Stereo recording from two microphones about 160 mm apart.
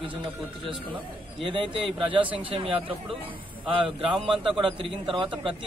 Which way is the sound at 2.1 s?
35° right (ahead or behind).